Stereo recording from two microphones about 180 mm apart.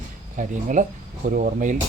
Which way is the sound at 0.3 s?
45° right (ahead or behind).